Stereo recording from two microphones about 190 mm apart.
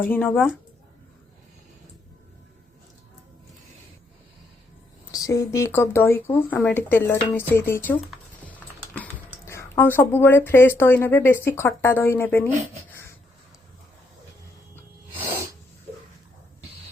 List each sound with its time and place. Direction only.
0.0 s speech: 10° left (ahead or behind)
5.1 s speech: 15° left (ahead or behind)
9.0 s speech: 10° left (ahead or behind)